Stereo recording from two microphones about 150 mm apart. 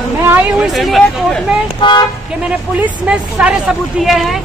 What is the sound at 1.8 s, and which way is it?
Speech, 35° left (ahead or behind).